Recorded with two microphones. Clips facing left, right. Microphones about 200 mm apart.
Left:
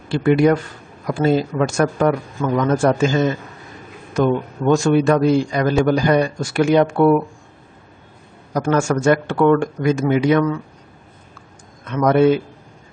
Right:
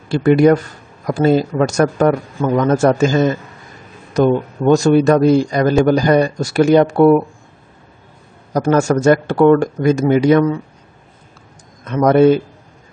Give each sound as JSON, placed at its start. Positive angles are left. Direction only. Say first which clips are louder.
{"t": 0.1, "sound": "a man's voice", "louder": "right 4 dB", "side_deg": -45}
{"t": 8.5, "sound": "a man's voice", "louder": "right 4 dB", "side_deg": -40}
{"t": 11.8, "sound": "speech", "louder": "right 4 dB", "side_deg": -40}